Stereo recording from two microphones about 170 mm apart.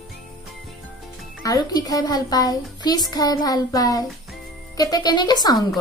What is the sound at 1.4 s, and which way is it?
A child's voice, 20° left (ahead or behind).